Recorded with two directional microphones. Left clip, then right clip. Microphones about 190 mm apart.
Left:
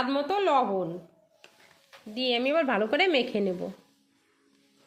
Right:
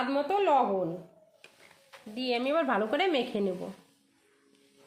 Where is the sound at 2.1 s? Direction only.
40° left (ahead or behind).